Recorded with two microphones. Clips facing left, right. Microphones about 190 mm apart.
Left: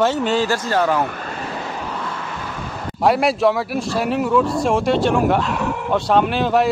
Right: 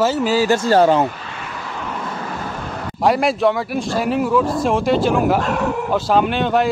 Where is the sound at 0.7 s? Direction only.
30° right (ahead or behind).